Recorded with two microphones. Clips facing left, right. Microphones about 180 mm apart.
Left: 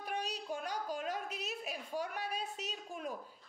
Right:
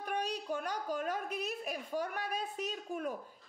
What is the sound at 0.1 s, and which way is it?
A woman's voice, 55° right (ahead or behind).